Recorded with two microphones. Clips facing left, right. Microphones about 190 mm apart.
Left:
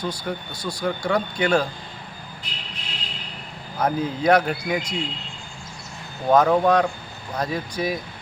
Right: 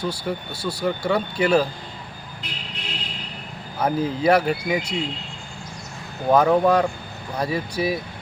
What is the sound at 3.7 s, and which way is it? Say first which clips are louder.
Speech: right 1 dB; 10° right (ahead or behind).